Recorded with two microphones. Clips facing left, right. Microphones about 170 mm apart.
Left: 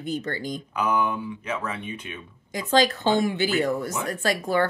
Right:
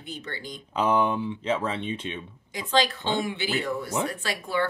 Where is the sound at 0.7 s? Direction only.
30° right (ahead or behind).